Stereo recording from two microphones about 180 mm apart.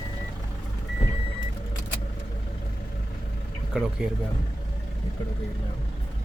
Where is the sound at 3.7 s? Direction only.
5° right (ahead or behind).